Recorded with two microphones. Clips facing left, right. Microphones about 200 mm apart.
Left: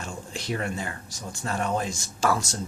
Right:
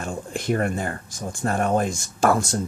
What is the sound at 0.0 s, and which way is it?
Speech, 55° right (ahead or behind).